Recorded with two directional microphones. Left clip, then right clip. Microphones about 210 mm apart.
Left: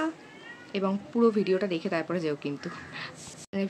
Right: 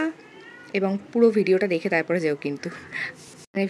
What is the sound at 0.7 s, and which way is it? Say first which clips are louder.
Speech: right 5 dB; 15° right (ahead or behind).